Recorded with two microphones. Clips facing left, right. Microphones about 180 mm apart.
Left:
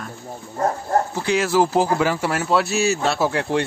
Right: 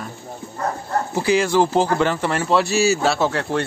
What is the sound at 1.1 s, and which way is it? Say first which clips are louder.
A man's voice: right 2 dB; 5° right (ahead or behind).